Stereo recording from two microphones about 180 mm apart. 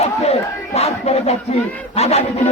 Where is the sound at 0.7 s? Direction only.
35° left (ahead or behind).